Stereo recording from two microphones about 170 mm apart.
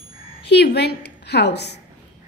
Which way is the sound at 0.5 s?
80° left.